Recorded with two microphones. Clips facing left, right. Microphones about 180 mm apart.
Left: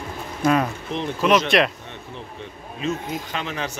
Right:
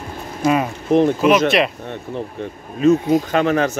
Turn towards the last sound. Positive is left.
turn(degrees=-50)  # may be behind; listen again after turning